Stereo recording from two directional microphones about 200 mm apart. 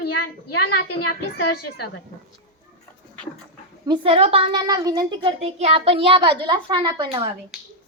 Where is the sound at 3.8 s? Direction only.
25° right (ahead or behind).